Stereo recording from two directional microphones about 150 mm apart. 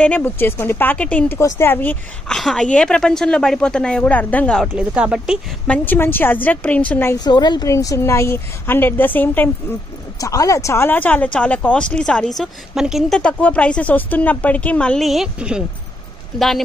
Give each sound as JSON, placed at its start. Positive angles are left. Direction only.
{"t": 0.0, "sound": "a woman's voice", "side_deg": 10}
{"t": 4.7, "sound": "speech", "side_deg": -5}
{"t": 5.7, "sound": "speech", "side_deg": 10}
{"t": 7.2, "sound": "speech", "side_deg": 30}
{"t": 10.2, "sound": "a woman's voice", "side_deg": 25}